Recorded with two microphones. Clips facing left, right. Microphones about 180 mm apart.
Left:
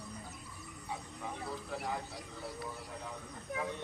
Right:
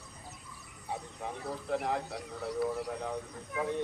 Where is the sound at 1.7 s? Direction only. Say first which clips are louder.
Right 9 dB; 65° right (ahead or behind).